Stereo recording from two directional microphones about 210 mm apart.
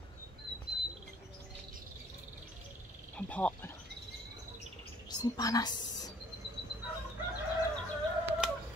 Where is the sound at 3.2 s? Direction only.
5° left (ahead or behind).